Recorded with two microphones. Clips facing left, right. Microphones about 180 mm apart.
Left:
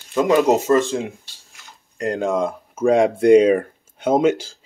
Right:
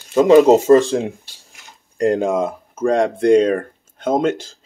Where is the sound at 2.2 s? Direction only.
10° right (ahead or behind).